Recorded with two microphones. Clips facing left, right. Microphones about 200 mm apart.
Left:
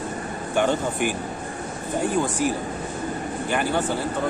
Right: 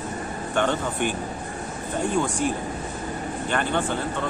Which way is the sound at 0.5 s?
10° left (ahead or behind).